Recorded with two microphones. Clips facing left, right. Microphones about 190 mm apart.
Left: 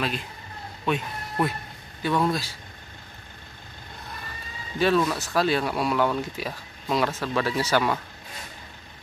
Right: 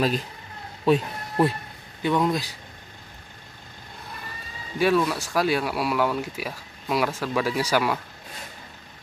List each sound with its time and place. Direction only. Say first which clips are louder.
0.9 s speech: right 6 dB; 35° right (ahead or behind)
2.0 s speech: right 1 dB; 15° right (ahead or behind)
4.7 s speech: right 1 dB; 10° right (ahead or behind)